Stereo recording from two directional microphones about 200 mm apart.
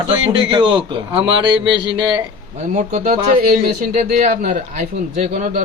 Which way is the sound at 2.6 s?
40° right (ahead or behind).